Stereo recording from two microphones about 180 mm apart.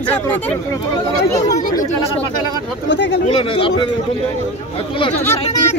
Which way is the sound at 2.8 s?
80° left.